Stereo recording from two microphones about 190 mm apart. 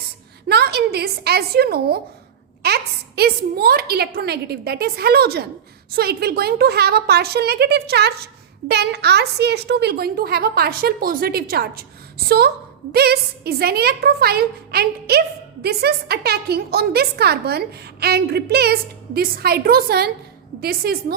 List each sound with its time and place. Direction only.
0.4 s a woman's voice: 60° right (ahead or behind)
12.9 s a woman's voice: 55° right (ahead or behind)